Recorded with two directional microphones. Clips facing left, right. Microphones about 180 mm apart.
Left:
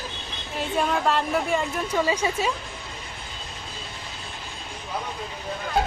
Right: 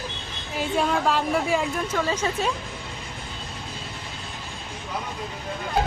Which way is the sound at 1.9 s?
10° left (ahead or behind).